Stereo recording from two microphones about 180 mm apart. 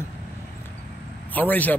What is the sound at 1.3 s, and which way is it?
Speech, 10° left (ahead or behind).